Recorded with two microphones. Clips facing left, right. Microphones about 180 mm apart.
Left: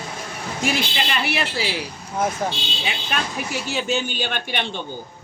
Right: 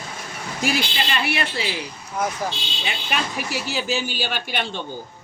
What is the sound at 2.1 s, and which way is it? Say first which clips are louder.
Speech: left 2 dB; 30° left (ahead or behind).